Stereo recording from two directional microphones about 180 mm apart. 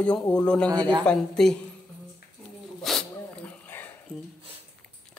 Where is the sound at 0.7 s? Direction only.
25° right (ahead or behind).